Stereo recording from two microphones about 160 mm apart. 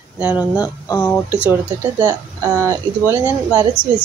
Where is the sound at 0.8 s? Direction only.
15° left (ahead or behind).